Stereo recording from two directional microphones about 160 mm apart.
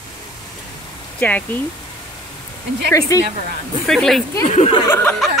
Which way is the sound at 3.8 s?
5° left (ahead or behind).